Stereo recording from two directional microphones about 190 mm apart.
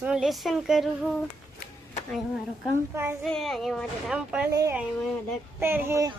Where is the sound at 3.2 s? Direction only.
Centre (ahead or behind).